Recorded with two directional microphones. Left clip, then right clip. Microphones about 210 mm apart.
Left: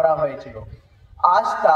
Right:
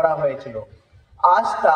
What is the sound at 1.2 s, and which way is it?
Speech, 50° right (ahead or behind).